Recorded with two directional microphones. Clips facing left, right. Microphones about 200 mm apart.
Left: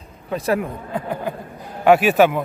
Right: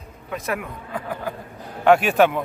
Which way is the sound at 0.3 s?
30° left (ahead or behind).